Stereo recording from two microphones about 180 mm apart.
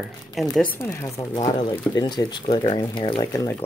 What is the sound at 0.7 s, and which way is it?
Speech, 15° left (ahead or behind).